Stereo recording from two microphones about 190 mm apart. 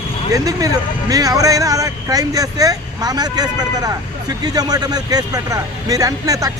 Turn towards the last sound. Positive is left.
turn(degrees=-20)  # may be behind; listen again after turning